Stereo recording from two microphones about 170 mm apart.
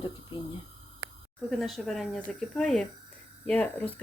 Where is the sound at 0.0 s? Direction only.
30° left (ahead or behind).